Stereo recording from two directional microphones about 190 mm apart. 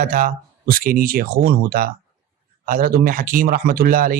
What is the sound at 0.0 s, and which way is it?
Speech, 45° right (ahead or behind).